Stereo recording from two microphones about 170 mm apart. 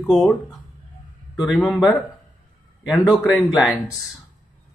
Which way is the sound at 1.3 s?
5° right (ahead or behind).